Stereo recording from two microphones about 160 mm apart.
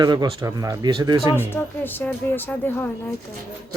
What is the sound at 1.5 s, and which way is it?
A woman's voice, 10° left (ahead or behind).